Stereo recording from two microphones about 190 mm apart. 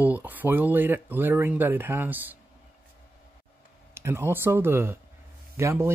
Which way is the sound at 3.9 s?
15° right (ahead or behind).